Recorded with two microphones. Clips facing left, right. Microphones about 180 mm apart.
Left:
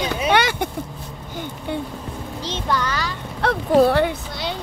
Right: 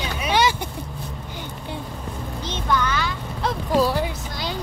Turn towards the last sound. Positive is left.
turn(degrees=60)  # may be behind; listen again after turning